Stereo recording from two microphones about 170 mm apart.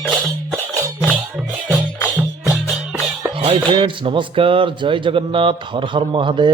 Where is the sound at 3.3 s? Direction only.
30° right (ahead or behind).